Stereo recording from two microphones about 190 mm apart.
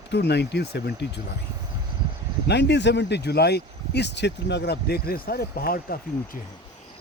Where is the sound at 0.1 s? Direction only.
60° left (ahead or behind).